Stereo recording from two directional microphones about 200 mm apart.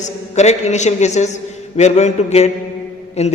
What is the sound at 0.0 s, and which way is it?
A man's voice, 35° left (ahead or behind).